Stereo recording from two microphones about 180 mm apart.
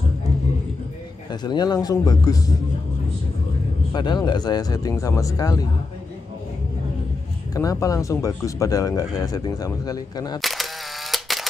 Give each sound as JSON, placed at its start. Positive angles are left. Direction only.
{"t": 1.3, "sound": "speech", "side_deg": 25}
{"t": 3.9, "sound": "speech", "side_deg": 25}
{"t": 7.5, "sound": "speech", "side_deg": 20}
{"t": 10.4, "sound": "camera", "side_deg": 0}